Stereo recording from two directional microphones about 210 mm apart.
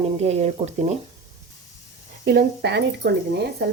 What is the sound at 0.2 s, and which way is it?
Speech, 30° right (ahead or behind).